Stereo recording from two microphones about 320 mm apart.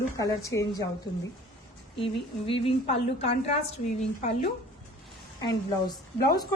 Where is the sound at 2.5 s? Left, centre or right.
Centre.